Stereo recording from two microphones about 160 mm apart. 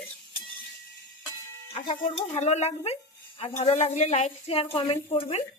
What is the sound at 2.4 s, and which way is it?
A woman's voice, 45° left (ahead or behind).